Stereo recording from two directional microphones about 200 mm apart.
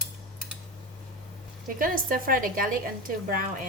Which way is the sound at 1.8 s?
45° right (ahead or behind).